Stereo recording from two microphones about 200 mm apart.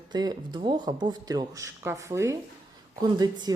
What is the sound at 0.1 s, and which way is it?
Speech, 20° right (ahead or behind).